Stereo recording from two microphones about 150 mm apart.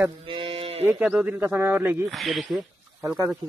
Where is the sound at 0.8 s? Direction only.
10° right (ahead or behind).